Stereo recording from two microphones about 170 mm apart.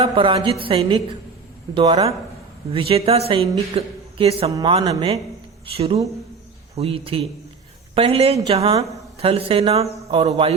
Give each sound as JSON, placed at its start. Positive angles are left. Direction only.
{"t": 0.0, "sound": "a woman's voice", "side_deg": -30}
{"t": 4.5, "sound": "speech", "side_deg": -25}
{"t": 5.7, "sound": "a woman's voice", "side_deg": -35}